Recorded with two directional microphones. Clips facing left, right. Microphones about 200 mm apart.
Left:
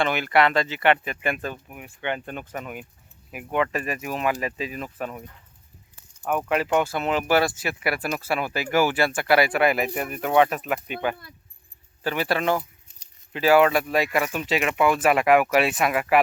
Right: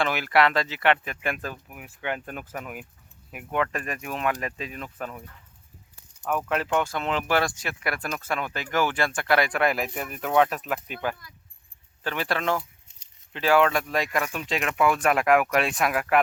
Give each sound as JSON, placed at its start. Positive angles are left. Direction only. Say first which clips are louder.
{"t": 0.0, "sound": "speech", "louder": "left 2 dB", "side_deg": 0}
{"t": 6.2, "sound": "speech", "louder": "left 3 dB", "side_deg": 10}
{"t": 12.9, "sound": "keys jangling", "louder": "left 4 dB", "side_deg": -25}
{"t": 13.3, "sound": "speech", "louder": "left 3 dB", "side_deg": 5}